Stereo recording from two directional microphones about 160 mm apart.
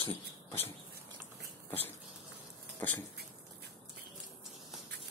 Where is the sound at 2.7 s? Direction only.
10° left (ahead or behind).